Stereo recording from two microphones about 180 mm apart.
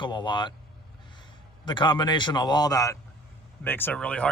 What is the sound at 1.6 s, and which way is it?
A man's voice, 25° left (ahead or behind).